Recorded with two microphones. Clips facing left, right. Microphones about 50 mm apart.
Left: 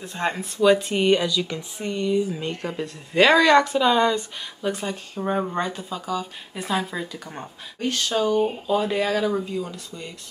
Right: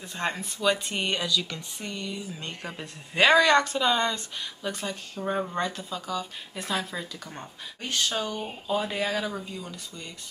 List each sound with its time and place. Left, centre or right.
0.0 s speech: centre
2.8 s speech: centre
7.8 s speech: centre